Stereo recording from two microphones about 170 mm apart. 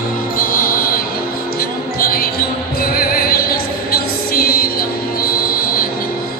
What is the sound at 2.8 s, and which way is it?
Music, 60° left (ahead or behind).